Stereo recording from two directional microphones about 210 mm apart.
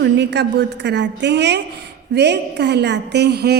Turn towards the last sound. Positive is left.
turn(degrees=-50)  # may be behind; listen again after turning